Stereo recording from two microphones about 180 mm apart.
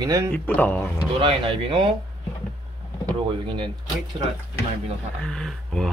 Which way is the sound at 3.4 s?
25° right (ahead or behind).